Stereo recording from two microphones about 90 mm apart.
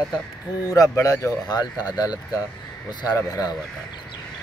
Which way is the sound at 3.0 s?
50° left (ahead or behind).